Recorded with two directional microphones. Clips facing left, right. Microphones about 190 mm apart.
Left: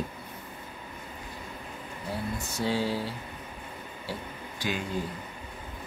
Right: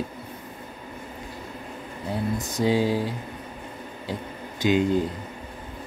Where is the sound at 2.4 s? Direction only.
15° right (ahead or behind).